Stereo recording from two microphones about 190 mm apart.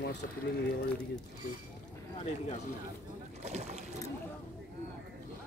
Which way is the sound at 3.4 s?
35° right (ahead or behind).